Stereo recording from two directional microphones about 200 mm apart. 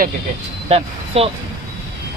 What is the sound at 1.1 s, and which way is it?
Speech, 30° right (ahead or behind).